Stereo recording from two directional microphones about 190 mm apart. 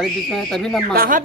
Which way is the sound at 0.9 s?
45° right (ahead or behind).